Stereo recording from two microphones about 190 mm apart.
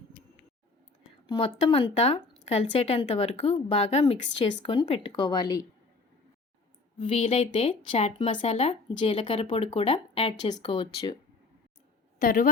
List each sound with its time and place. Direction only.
1.3 s speech: 30° left (ahead or behind)
7.0 s speech: 30° left (ahead or behind)
12.2 s a woman's voice: 45° left (ahead or behind)